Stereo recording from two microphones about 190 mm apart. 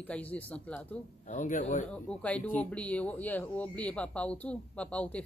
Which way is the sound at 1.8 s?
5° left (ahead or behind).